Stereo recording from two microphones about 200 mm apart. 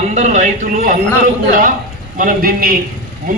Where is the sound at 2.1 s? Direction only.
45° right (ahead or behind).